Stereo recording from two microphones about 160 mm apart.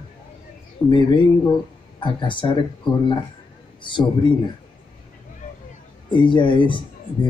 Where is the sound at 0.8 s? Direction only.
30° left (ahead or behind).